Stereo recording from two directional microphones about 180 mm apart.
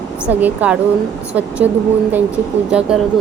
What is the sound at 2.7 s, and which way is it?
Speech, 5° right (ahead or behind).